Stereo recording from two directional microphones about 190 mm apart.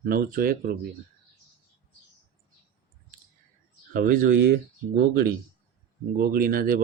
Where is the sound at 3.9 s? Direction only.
45° right (ahead or behind).